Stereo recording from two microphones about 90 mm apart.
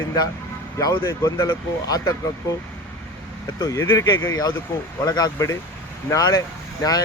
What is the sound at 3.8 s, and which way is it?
Speech, 30° left (ahead or behind).